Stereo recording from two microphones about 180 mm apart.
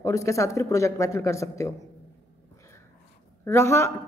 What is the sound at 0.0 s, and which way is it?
Speech, 15° left (ahead or behind).